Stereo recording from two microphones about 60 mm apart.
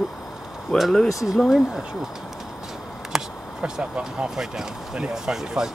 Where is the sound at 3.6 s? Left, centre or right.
Centre.